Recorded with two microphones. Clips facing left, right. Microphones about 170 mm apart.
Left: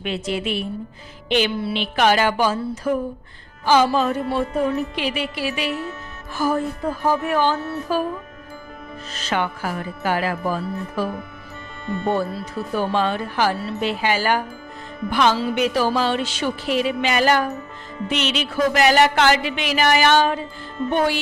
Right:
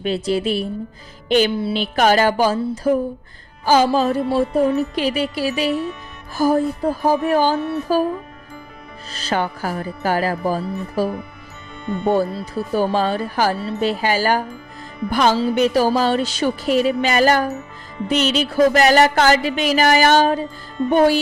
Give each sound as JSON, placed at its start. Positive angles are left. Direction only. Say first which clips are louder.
{"t": 0.0, "sound": "music", "louder": "right 5 dB", "side_deg": -35}
{"t": 9.1, "sound": "music", "louder": "right 2 dB", "side_deg": -35}
{"t": 11.9, "sound": "speech", "louder": "right 3 dB", "side_deg": -15}
{"t": 12.7, "sound": "music", "louder": "right 3 dB", "side_deg": -40}